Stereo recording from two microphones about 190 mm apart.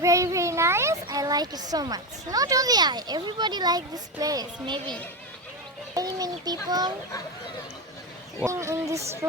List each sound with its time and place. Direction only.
0.0 s a child's voice: 15° right (ahead or behind)
8.4 s speech: 15° right (ahead or behind)